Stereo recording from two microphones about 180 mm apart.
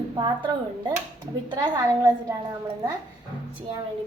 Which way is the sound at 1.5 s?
25° right (ahead or behind).